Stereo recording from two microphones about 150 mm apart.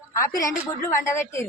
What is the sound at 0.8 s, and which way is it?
Speech, 20° left (ahead or behind).